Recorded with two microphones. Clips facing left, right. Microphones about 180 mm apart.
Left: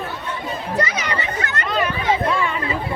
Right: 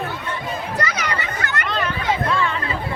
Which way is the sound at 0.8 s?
25° left (ahead or behind).